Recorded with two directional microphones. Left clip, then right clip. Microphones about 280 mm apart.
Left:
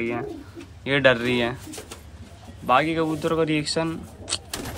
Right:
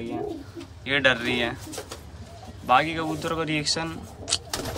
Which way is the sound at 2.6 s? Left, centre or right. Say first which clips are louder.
Left 1 dB; centre.